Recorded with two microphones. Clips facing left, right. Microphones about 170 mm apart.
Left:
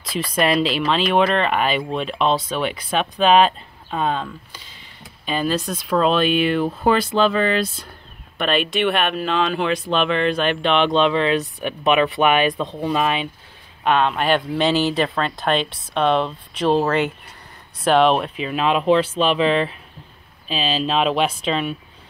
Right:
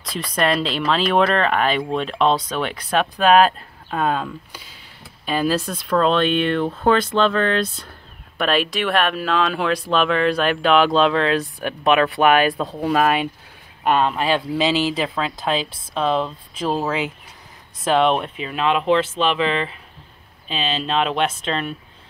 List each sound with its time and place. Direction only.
0.4 s speech: 5° left (ahead or behind)
18.4 s speech: 20° left (ahead or behind)
20.8 s speech: 5° left (ahead or behind)